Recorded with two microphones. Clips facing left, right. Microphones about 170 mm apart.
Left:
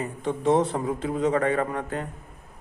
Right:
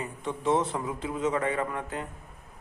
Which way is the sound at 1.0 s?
45° left (ahead or behind).